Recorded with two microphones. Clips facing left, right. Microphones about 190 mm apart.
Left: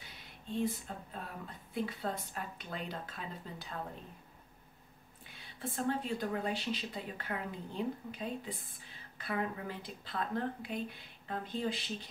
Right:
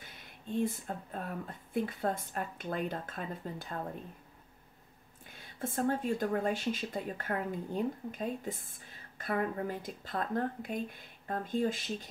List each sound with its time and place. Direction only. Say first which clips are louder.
0.0 s speech: right 3 dB; 50° right (ahead or behind)
5.2 s speech: right 4 dB; 45° right (ahead or behind)